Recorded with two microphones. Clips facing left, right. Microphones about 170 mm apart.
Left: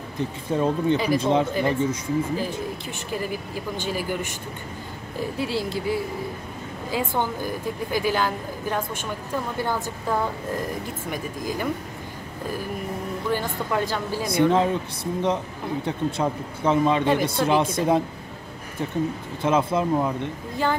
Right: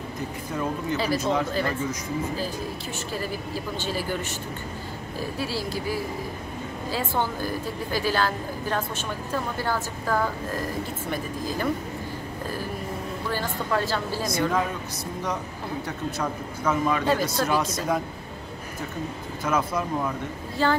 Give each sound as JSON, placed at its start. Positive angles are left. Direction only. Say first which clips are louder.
{"t": 0.2, "sound": "speech", "louder": "left 7 dB", "side_deg": 25}
{"t": 0.9, "sound": "a woman's voice", "louder": "left 3 dB", "side_deg": 15}
{"t": 1.2, "sound": "speech", "louder": "left 4 dB", "side_deg": 25}
{"t": 3.1, "sound": "a woman's voice", "louder": "left 3 dB", "side_deg": 15}
{"t": 5.4, "sound": "a woman's voice", "louder": "left 4 dB", "side_deg": 20}
{"t": 13.3, "sound": "a woman's voice", "louder": "left 1 dB", "side_deg": 15}
{"t": 14.3, "sound": "speech", "louder": "left 7 dB", "side_deg": 25}
{"t": 19.4, "sound": "a woman's voice", "louder": "left 5 dB", "side_deg": 25}